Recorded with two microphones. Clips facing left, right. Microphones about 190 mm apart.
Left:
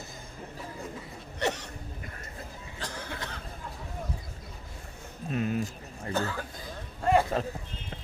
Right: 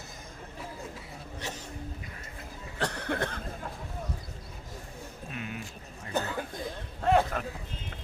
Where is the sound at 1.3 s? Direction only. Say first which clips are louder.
Left 10 dB; 70° left (ahead or behind).